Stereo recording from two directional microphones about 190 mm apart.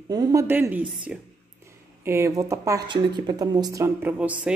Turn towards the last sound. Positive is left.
turn(degrees=-5)  # may be behind; listen again after turning